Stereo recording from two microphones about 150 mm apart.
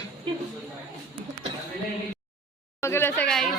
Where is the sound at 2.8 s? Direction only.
15° left (ahead or behind).